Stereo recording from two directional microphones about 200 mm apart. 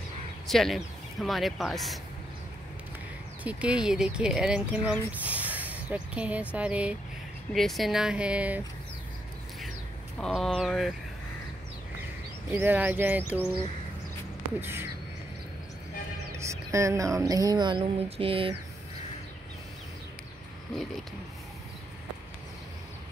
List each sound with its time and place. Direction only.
0.5 s speech: centre (ahead or behind)
3.4 s speech: 5° right (ahead or behind)
10.2 s speech: centre (ahead or behind)
12.4 s speech: 10° right (ahead or behind)
14.6 s speech: 10° right (ahead or behind)
16.3 s speech: 15° right (ahead or behind)